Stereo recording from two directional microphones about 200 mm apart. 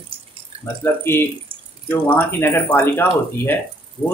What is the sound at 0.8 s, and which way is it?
Speech, 10° left (ahead or behind).